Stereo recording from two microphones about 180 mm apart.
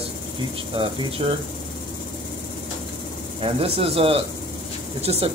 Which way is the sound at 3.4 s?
35° right (ahead or behind).